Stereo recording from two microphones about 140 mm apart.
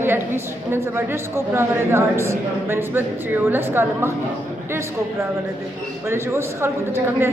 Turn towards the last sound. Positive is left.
turn(degrees=-20)  # may be behind; listen again after turning